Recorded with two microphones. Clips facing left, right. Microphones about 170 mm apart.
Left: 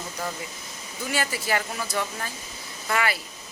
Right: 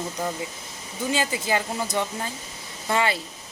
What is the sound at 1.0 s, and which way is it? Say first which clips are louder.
A woman's voice: right 3 dB; 20° right (ahead or behind).